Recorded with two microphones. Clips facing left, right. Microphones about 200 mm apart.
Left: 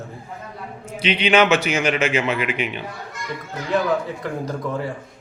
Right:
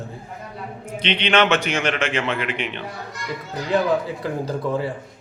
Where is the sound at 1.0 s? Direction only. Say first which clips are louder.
Left 2 dB; 5° left (ahead or behind).